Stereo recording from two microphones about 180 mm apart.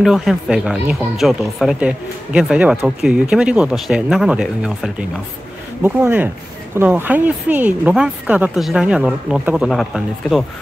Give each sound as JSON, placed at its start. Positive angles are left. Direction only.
{"t": 0.0, "sound": "speech", "side_deg": 0}